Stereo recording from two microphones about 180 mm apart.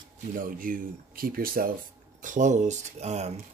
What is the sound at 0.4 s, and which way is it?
Speech, 50° right (ahead or behind).